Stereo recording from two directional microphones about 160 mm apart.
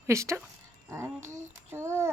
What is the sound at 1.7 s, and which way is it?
Speech, 15° right (ahead or behind).